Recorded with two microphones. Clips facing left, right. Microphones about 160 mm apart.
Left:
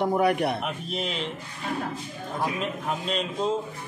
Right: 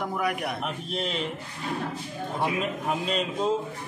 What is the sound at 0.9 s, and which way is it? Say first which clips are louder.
Speech: right 2 dB; centre (ahead or behind).